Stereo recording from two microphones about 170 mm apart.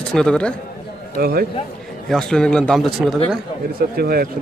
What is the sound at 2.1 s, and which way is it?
A man's voice, 5° left (ahead or behind).